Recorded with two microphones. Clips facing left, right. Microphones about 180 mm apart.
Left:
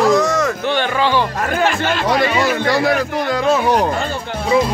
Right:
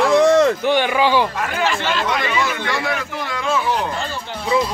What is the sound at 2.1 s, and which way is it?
A man's voice, 35° left (ahead or behind).